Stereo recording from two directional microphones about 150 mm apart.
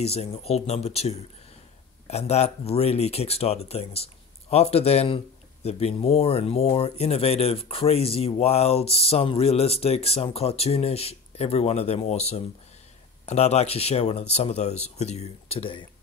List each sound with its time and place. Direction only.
0.0 s speech: 45° left (ahead or behind)